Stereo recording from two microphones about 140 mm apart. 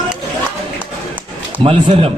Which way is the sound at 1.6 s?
45° right (ahead or behind).